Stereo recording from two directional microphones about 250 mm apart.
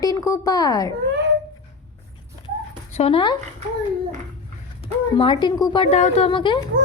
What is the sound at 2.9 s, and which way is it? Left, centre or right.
Speech, left.